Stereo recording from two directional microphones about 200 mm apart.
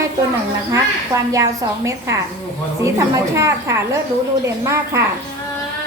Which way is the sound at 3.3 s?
15° right (ahead or behind).